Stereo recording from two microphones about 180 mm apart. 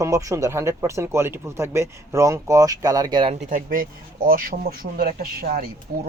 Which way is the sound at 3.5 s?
50° right (ahead or behind).